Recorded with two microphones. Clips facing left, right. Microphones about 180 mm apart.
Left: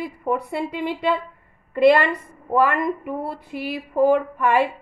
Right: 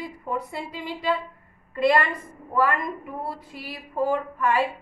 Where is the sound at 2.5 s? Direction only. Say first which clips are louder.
Left 5 dB; 65° left (ahead or behind).